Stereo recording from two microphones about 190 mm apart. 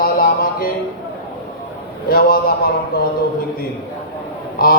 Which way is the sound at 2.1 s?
50° left (ahead or behind).